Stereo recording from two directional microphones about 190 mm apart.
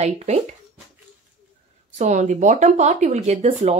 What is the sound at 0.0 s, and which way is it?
Speech, 35° right (ahead or behind).